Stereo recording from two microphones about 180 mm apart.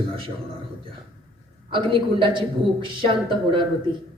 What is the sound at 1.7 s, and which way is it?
A man's voice, 25° right (ahead or behind).